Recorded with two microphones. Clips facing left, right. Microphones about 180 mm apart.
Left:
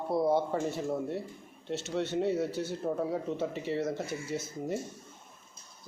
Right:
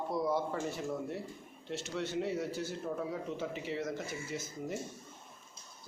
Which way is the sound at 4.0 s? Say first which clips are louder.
Left 4 dB; 70° left (ahead or behind).